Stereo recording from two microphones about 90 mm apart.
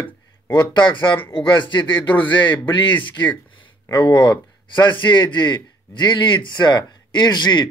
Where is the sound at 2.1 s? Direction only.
20° left (ahead or behind).